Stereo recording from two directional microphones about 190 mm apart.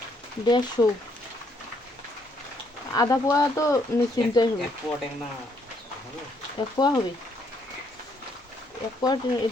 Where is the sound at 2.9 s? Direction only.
15° left (ahead or behind).